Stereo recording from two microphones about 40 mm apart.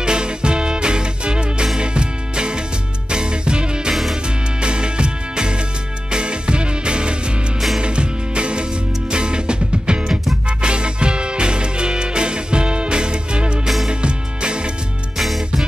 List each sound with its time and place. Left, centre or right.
0.0 s music: right
3.9 s music: centre
4.6 s music: right
15.1 s music: centre